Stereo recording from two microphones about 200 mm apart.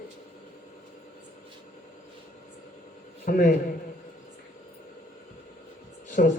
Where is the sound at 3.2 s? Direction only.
40° left (ahead or behind).